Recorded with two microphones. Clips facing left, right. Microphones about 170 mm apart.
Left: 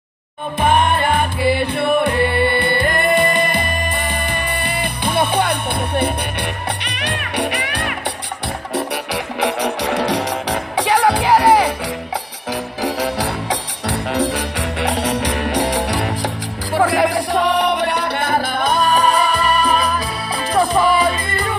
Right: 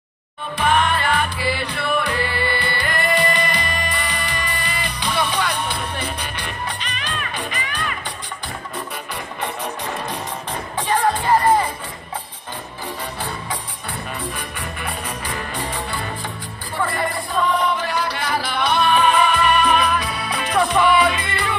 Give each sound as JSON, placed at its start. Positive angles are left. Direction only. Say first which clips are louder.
{"t": 0.6, "sound": "music", "louder": "left 3 dB", "side_deg": 50}
{"t": 12.8, "sound": "music", "louder": "left 9 dB", "side_deg": 90}